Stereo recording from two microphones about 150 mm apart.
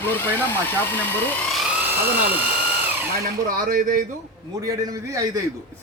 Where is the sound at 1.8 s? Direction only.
10° right (ahead or behind).